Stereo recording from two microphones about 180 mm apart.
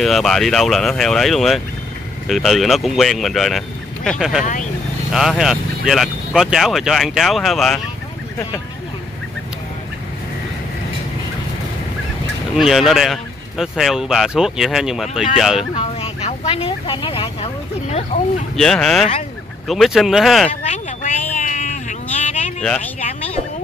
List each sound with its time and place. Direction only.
0.0 s speech: centre (ahead or behind)
12.5 s speech: centre (ahead or behind)
15.7 s speech: 30° left (ahead or behind)
18.6 s speech: 5° left (ahead or behind)
20.6 s vehicle: 40° left (ahead or behind)
22.6 s speech: 5° left (ahead or behind)